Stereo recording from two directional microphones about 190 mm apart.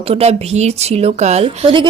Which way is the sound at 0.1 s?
35° right (ahead or behind).